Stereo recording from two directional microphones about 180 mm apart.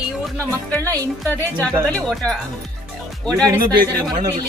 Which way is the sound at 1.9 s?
5° left (ahead or behind).